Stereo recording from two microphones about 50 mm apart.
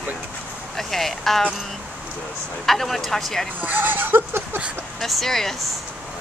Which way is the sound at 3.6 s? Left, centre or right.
Right.